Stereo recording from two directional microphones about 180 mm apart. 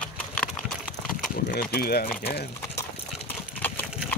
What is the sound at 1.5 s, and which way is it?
Speech, 55° left (ahead or behind).